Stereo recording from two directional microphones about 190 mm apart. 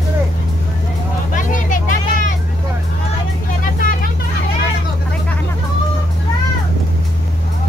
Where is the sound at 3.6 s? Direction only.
45° left (ahead or behind).